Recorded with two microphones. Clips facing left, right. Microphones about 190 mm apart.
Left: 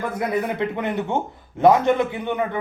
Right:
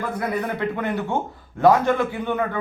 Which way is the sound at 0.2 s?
20° left (ahead or behind).